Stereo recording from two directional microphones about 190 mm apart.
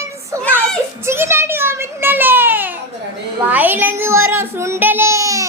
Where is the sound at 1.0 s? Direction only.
15° right (ahead or behind).